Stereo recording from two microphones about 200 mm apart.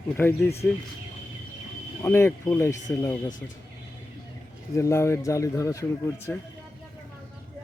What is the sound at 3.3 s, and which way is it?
Speech, 40° left (ahead or behind).